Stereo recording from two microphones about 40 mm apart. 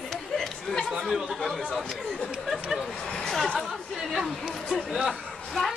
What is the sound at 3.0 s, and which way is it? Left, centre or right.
Speech, centre.